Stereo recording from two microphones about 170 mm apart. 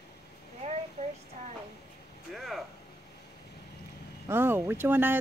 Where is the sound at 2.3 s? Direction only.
Centre (ahead or behind).